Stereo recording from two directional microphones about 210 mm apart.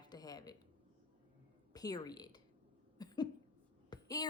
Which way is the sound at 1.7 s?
20° left (ahead or behind).